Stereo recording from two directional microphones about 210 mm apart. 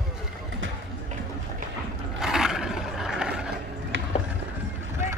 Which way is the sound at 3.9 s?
65° right (ahead or behind).